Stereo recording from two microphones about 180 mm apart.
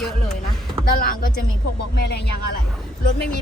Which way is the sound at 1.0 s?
50° left (ahead or behind).